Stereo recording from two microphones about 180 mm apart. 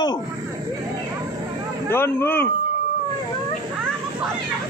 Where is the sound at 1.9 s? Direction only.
10° left (ahead or behind).